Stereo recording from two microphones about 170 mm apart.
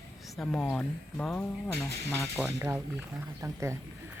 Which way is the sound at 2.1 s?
15° right (ahead or behind).